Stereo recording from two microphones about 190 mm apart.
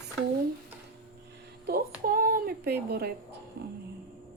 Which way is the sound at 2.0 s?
50° right (ahead or behind).